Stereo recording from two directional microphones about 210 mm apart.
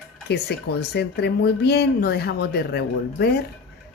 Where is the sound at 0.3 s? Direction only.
50° left (ahead or behind).